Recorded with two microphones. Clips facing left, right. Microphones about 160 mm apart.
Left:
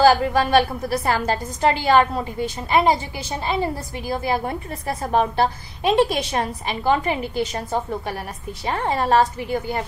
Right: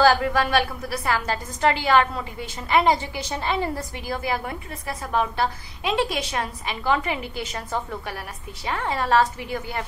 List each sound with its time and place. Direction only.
0.3 s a woman's voice: 35° left (ahead or behind)